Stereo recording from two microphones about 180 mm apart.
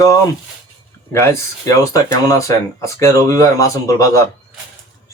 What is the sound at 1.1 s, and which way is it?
Speech, 15° left (ahead or behind).